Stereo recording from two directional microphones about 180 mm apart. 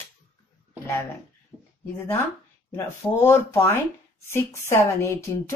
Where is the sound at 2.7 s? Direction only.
15° left (ahead or behind).